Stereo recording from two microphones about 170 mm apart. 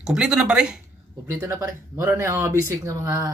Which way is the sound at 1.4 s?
20° right (ahead or behind).